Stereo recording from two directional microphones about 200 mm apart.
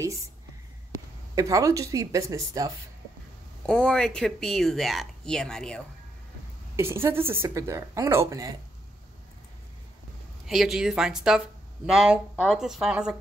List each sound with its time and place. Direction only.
1.3 s speech: 15° right (ahead or behind)
3.6 s speech: 5° left (ahead or behind)
6.8 s speech: 10° right (ahead or behind)
10.4 s speech: centre (ahead or behind)